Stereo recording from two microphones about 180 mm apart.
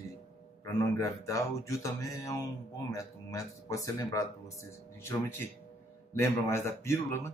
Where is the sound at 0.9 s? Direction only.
15° left (ahead or behind).